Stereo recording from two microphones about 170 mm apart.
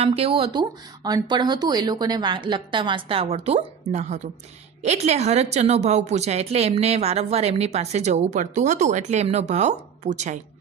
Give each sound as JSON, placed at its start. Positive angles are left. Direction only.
{"t": 0.0, "sound": "a woman's voice", "side_deg": -35}